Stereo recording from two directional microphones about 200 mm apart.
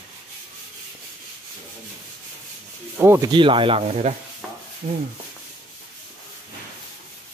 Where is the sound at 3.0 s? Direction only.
15° right (ahead or behind); by 4.1 s 30° right (ahead or behind).